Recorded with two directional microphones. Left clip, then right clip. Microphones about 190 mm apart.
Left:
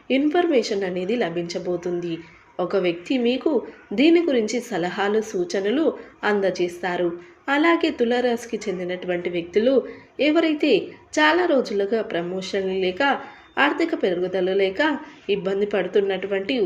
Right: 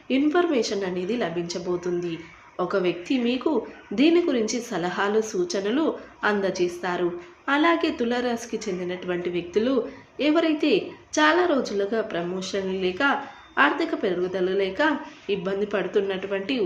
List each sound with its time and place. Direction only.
0.1 s a woman's voice: 15° left (ahead or behind)